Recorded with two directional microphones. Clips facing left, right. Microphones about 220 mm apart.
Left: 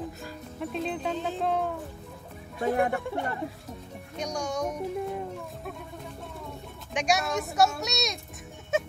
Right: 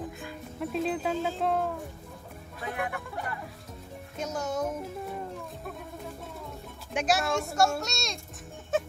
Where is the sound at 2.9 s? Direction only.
25° left (ahead or behind).